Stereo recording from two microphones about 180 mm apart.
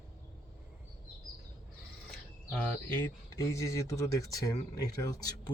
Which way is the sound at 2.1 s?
5° left (ahead or behind).